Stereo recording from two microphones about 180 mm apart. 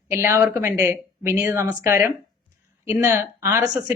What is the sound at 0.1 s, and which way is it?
A woman's voice, 15° right (ahead or behind).